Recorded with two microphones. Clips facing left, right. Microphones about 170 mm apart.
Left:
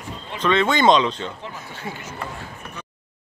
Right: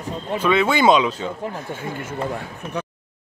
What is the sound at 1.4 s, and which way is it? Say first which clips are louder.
Speech: right 5 dB; 50° right (ahead or behind).